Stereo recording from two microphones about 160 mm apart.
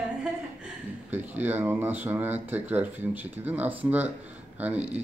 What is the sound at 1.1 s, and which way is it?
Speech, 10° right (ahead or behind).